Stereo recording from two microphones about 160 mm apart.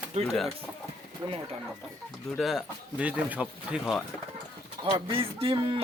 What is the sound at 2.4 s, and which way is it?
Speech, centre (ahead or behind).